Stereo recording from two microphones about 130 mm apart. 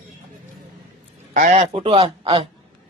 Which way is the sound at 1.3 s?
70° right (ahead or behind).